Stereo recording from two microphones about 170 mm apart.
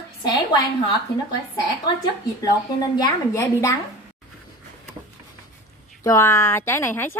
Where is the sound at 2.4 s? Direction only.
20° left (ahead or behind).